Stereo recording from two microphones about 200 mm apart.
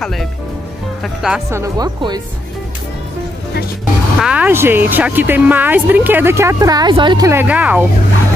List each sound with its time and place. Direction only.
1.0 s speech: centre (ahead or behind)
1.5 s speech: 15° right (ahead or behind)
4.2 s speech: 5° right (ahead or behind)